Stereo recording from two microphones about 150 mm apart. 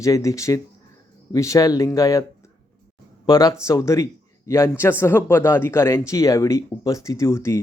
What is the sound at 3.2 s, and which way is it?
A man's voice, 25° left (ahead or behind).